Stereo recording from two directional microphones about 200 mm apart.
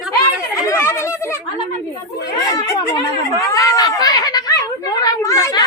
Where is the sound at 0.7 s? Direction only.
15° left (ahead or behind).